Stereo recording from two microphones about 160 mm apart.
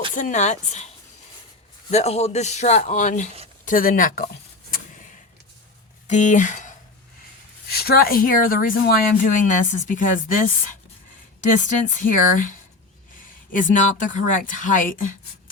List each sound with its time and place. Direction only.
0.1 s speech: 50° left (ahead or behind)
1.9 s speech: 40° left (ahead or behind)
3.7 s speech: 60° left (ahead or behind)
6.1 s speech: 50° left (ahead or behind)
7.7 s speech: 70° left (ahead or behind); by 10.5 s 55° left (ahead or behind)
11.9 s speech: 55° left (ahead or behind)